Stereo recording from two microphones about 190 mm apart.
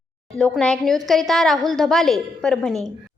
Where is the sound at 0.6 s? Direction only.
5° left (ahead or behind).